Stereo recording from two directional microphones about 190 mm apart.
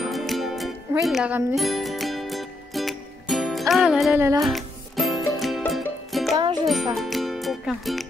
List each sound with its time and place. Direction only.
0.0 s music: centre (ahead or behind)
6.3 s music: 20° right (ahead or behind)
6.7 s speech: centre (ahead or behind)